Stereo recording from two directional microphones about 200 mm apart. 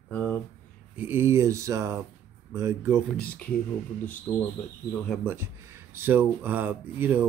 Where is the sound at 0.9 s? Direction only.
10° right (ahead or behind).